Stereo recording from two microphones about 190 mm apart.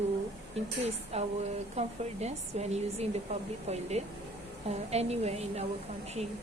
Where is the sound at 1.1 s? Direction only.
35° right (ahead or behind).